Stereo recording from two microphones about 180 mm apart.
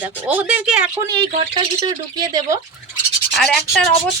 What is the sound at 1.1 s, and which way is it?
Speech, 25° right (ahead or behind).